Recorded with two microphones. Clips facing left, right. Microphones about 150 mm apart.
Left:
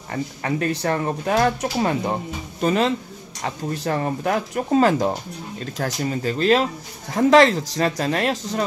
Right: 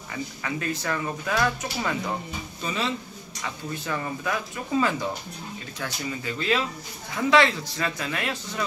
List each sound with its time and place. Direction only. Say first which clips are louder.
0.1 s speech: left 7 dB; 45° left (ahead or behind)
2.6 s speech: left 10 dB; 55° left (ahead or behind)
3.4 s speech: left 7 dB; 40° left (ahead or behind)
4.0 s speech: left 7 dB; 50° left (ahead or behind)
5.8 s speech: left 8 dB; 40° left (ahead or behind)